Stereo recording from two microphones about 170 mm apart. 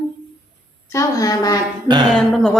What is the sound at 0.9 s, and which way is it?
Speech, 20° left (ahead or behind).